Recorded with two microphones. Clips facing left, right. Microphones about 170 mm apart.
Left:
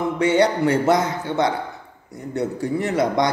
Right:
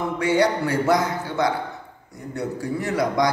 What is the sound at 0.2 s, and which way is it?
Speech, 20° left (ahead or behind).